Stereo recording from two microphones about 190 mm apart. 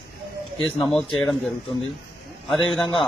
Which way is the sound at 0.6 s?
5° left (ahead or behind).